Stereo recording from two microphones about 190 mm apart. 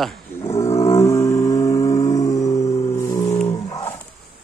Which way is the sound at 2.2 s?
15° left (ahead or behind).